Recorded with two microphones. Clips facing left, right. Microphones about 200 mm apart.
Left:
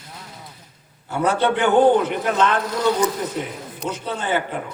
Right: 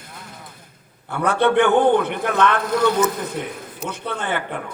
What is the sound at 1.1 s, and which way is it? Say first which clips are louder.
A man's voice: right 1 dB; 60° right (ahead or behind).